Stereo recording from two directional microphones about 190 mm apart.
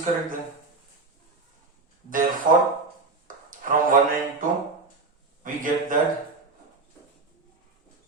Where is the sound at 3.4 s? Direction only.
45° right (ahead or behind).